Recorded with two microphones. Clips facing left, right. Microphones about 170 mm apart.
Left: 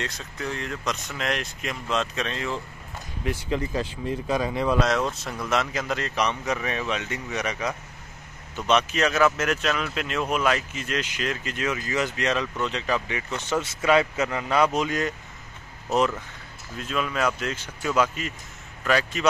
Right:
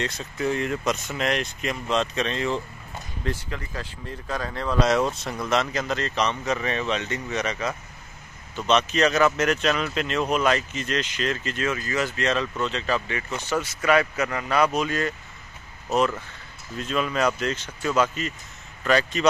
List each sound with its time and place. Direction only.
0.4 s speech: 5° right (ahead or behind)
3.3 s speech: 20° left (ahead or behind)
4.7 s speech: centre (ahead or behind); by 15.1 s 15° left (ahead or behind)
16.7 s speech: 5° left (ahead or behind)